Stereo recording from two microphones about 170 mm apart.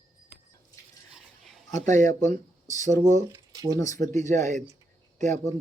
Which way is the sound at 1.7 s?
45° right (ahead or behind).